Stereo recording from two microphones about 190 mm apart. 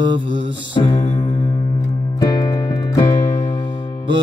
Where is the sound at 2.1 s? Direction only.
20° left (ahead or behind).